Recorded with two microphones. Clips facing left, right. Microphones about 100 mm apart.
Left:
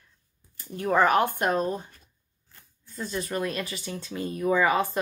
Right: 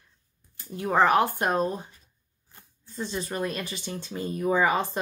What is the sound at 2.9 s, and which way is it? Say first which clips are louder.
Speech: left 1 dB; 25° right (ahead or behind).